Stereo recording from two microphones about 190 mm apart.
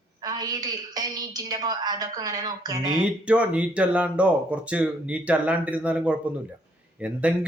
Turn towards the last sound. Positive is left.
turn(degrees=-5)  # may be behind; listen again after turning